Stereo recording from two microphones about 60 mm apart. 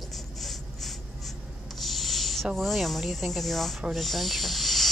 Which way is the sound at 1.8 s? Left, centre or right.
Centre.